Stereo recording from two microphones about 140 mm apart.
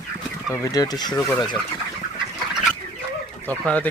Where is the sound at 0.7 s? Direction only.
25° left (ahead or behind).